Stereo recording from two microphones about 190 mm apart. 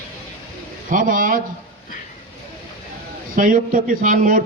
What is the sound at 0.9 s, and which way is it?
Speech, 45° right (ahead or behind).